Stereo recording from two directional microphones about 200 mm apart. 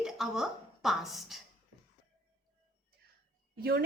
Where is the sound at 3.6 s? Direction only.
55° right (ahead or behind).